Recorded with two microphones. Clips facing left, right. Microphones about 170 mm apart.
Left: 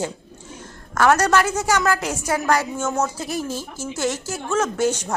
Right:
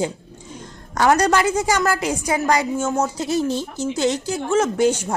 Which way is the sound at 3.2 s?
25° right (ahead or behind).